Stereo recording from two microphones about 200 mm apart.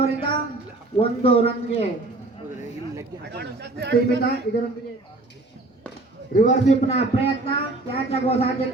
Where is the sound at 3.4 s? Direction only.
60° right (ahead or behind).